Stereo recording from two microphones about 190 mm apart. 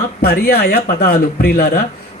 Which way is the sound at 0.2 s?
55° left (ahead or behind).